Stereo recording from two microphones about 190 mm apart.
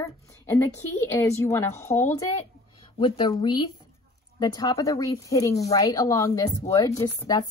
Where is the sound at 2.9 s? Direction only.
25° left (ahead or behind).